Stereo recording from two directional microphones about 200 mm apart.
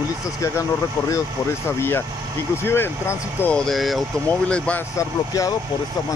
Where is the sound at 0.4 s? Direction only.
15° left (ahead or behind).